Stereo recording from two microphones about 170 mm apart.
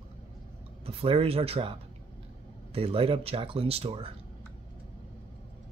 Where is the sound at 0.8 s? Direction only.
35° right (ahead or behind).